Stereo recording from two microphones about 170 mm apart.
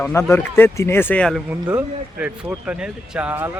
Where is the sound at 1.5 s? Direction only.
10° right (ahead or behind).